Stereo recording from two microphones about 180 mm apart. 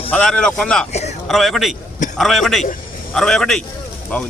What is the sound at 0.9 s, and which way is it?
Speech, 40° left (ahead or behind).